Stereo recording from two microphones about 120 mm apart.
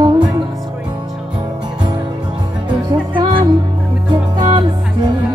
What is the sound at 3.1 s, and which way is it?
Music, 45° right (ahead or behind).